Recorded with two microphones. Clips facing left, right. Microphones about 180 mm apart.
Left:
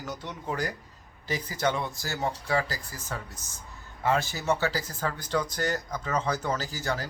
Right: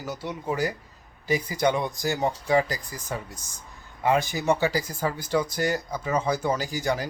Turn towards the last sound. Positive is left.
turn(degrees=-15)  # may be behind; listen again after turning